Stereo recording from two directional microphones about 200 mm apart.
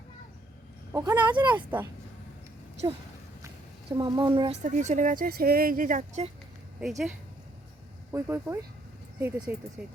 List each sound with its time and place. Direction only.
0.9 s speech: 15° right (ahead or behind)
3.9 s speech: 20° right (ahead or behind)
4.6 s speech: 35° right (ahead or behind)
6.7 s speech: centre (ahead or behind)
8.1 s speech: 10° right (ahead or behind)